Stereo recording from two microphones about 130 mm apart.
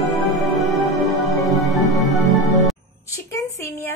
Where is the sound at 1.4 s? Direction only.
Centre (ahead or behind).